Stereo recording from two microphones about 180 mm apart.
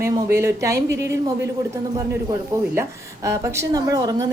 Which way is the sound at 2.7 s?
15° right (ahead or behind).